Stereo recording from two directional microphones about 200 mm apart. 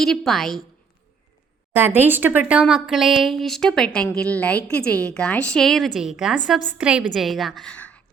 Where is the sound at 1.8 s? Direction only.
10° right (ahead or behind).